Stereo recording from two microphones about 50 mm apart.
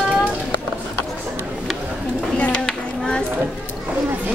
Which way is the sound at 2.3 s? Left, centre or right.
Left.